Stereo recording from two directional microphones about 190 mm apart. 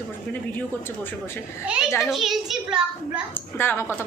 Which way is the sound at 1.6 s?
5° right (ahead or behind).